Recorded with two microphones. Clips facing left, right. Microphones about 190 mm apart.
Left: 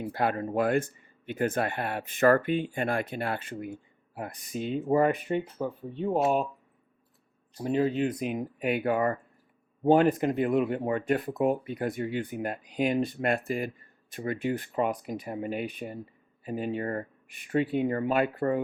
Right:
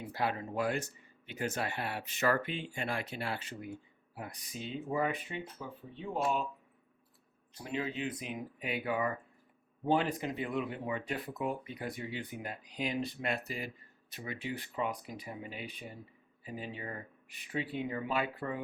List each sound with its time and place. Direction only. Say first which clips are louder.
0.0 s speech: left 7 dB; 55° left (ahead or behind)
7.6 s speech: left 11 dB; 40° left (ahead or behind)